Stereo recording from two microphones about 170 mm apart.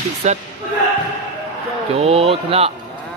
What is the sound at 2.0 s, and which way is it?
Speech, 35° right (ahead or behind).